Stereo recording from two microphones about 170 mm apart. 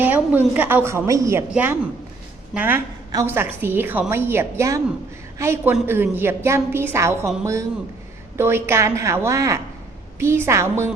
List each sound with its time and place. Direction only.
0.0 s a woman's voice: 10° right (ahead or behind)